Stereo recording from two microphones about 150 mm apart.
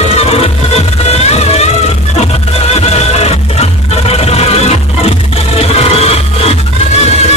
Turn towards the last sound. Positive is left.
turn(degrees=40)  # may be behind; listen again after turning